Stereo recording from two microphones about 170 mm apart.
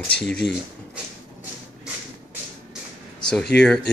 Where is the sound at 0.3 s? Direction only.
85° left.